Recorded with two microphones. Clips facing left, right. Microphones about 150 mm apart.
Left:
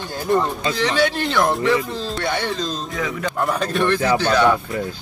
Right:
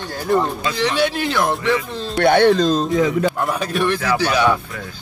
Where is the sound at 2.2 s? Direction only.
60° right (ahead or behind).